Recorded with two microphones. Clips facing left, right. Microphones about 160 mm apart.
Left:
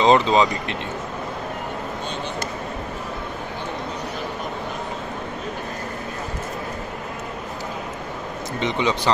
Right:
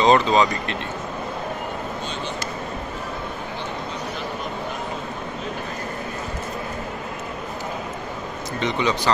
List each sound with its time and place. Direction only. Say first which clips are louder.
0.0 s speech: left 1 dB; 20° left (ahead or behind)
8.5 s speech: even; 20° left (ahead or behind)